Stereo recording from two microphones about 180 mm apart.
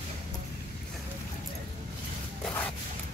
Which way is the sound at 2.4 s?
5° left (ahead or behind).